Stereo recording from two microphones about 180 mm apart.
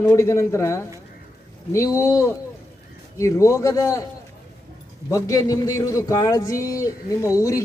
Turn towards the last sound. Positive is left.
turn(degrees=20)  # may be behind; listen again after turning